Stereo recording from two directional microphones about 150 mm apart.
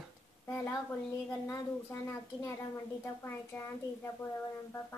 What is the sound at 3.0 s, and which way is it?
A woman's voice, 15° left (ahead or behind).